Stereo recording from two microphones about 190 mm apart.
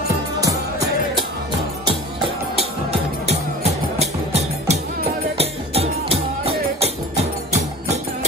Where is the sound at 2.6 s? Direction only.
35° right (ahead or behind).